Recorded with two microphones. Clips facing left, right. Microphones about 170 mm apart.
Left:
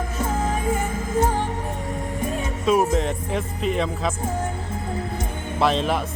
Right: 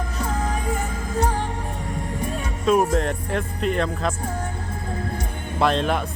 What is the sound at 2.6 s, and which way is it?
Speech, centre (ahead or behind).